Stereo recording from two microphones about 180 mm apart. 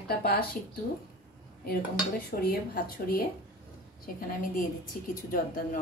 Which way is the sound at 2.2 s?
55° left (ahead or behind).